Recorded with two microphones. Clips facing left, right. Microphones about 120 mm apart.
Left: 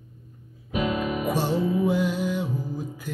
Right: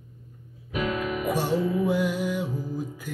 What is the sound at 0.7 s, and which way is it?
Music, 20° left (ahead or behind).